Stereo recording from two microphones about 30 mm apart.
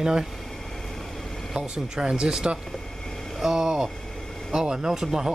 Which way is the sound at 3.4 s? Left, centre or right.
Right.